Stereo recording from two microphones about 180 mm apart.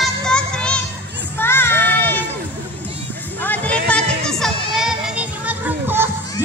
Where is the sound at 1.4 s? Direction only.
10° left (ahead or behind).